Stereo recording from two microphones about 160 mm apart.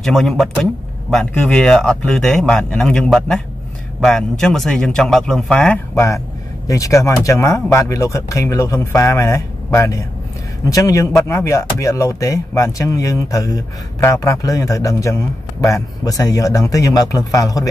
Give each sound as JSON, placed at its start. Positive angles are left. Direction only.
{"t": 0.0, "sound": "a man's voice", "side_deg": 0}
{"t": 5.9, "sound": "speech", "side_deg": 20}